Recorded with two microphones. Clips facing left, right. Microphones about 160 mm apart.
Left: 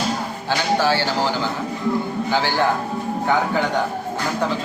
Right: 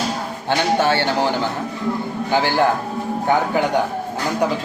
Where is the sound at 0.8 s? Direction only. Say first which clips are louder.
Right 2 dB; 60° right (ahead or behind).